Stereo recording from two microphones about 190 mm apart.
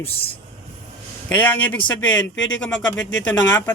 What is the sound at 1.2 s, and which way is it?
Speech, 10° left (ahead or behind).